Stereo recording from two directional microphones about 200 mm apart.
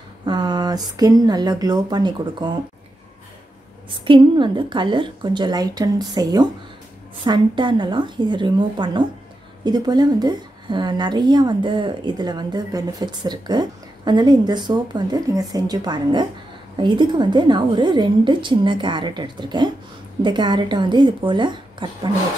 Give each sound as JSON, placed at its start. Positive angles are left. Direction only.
{"t": 0.2, "sound": "a woman's voice", "side_deg": -20}
{"t": 3.9, "sound": "a woman's voice", "side_deg": -25}